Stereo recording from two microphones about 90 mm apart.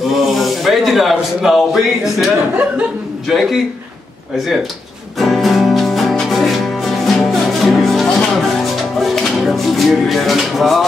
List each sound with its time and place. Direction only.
0.1 s a man's voice: centre (ahead or behind)
5.2 s music: centre (ahead or behind)
9.0 s speech: centre (ahead or behind)